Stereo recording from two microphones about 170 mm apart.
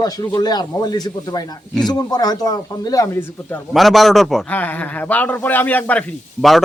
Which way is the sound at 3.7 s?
Centre (ahead or behind).